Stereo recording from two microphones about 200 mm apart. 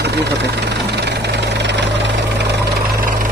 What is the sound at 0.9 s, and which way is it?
Vehicle, 55° right (ahead or behind).